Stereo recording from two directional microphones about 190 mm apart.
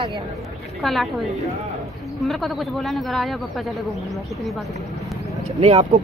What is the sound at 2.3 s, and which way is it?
Speech, centre (ahead or behind).